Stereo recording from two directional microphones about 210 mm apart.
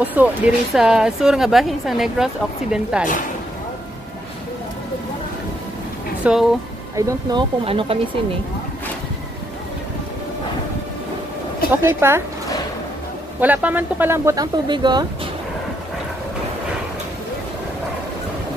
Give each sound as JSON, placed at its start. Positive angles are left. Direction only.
{"t": 0.0, "sound": "speech", "side_deg": -10}
{"t": 6.2, "sound": "speech", "side_deg": -5}
{"t": 7.0, "sound": "speech", "side_deg": -15}
{"t": 11.7, "sound": "speech", "side_deg": -10}
{"t": 13.4, "sound": "speech", "side_deg": -10}